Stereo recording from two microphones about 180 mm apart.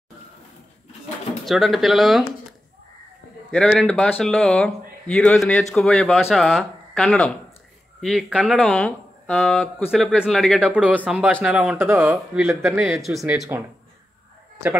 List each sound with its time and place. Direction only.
1.4 s speech: centre (ahead or behind)
3.5 s speech: 5° left (ahead or behind)
13.5 s speech: 15° right (ahead or behind)